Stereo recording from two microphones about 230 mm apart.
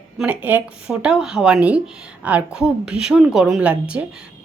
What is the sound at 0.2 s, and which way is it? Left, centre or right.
A woman's voice, centre.